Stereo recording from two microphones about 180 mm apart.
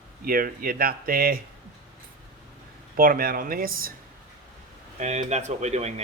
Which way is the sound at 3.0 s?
55° right (ahead or behind).